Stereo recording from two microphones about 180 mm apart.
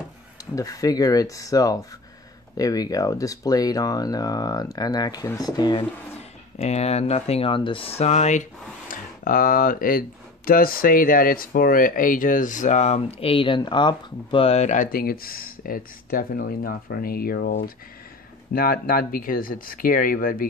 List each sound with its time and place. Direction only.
0.6 s speech: 20° left (ahead or behind)
6.6 s speech: 35° left (ahead or behind); by 20.4 s 50° left (ahead or behind)